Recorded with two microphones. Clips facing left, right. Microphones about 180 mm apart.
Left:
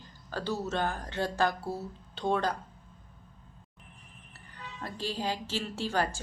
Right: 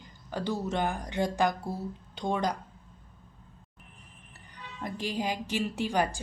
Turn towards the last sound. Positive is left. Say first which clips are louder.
# right 2 dB
turn(degrees=-15)  # may be behind; listen again after turning